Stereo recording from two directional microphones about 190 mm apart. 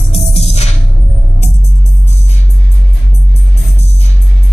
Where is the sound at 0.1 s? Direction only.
35° left (ahead or behind).